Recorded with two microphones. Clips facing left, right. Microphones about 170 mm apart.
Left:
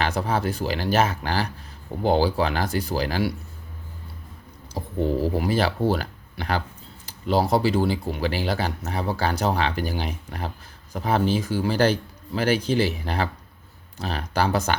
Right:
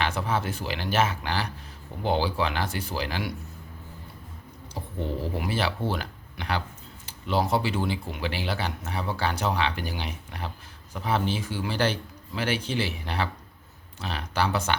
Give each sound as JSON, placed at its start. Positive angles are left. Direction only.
{"t": 0.0, "sound": "speech", "side_deg": 40}
{"t": 4.8, "sound": "speech", "side_deg": 40}